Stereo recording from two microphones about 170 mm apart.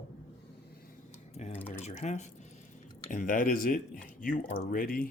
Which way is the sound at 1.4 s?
40° left (ahead or behind).